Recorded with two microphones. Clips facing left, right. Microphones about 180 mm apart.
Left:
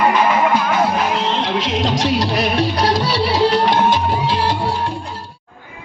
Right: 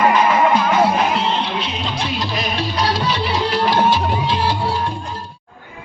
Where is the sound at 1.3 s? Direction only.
85° left; by 2.8 s 65° left (ahead or behind).